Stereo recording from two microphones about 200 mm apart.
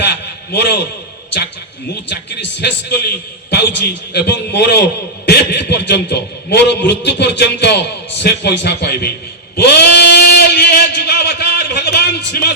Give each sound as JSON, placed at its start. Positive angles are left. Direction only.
{"t": 0.5, "sound": "a man's voice", "side_deg": 60}
{"t": 2.0, "sound": "a man's voice", "side_deg": 60}
{"t": 4.1, "sound": "a man's voice", "side_deg": 55}